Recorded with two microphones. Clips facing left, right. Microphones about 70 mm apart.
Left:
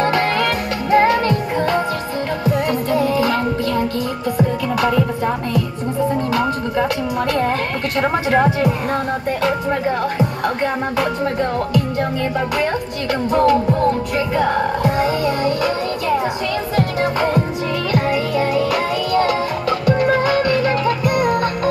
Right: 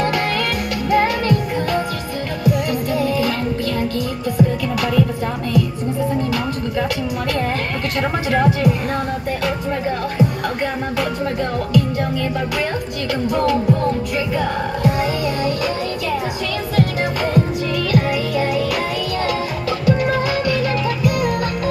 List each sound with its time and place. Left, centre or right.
0.0 s music: left
4.4 s music: left
8.0 s music: left
13.3 s music: left